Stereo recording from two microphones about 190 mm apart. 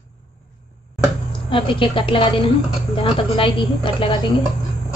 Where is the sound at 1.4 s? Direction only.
25° left (ahead or behind).